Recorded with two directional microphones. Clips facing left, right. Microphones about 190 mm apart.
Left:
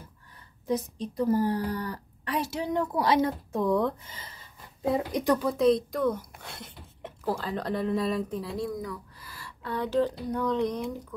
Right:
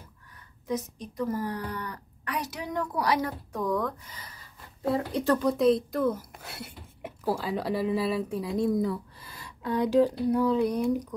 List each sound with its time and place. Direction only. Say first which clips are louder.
0.7 s speech: left 3 dB; 30° left (ahead or behind)
5.4 s speech: even; centre (ahead or behind)